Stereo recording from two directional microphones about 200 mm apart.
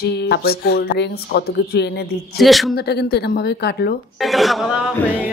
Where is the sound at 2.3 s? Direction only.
Centre (ahead or behind).